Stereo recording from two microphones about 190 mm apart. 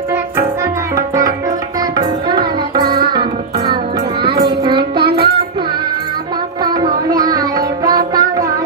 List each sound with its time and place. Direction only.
0.9 s music: 15° right (ahead or behind)
4.2 s child singing: 55° right (ahead or behind)
4.6 s child singing: 25° right (ahead or behind)
5.0 s child singing: 55° right (ahead or behind)
6.6 s child singing: 20° right (ahead or behind)
7.1 s music: 20° right (ahead or behind)
8.1 s child singing: 20° right (ahead or behind)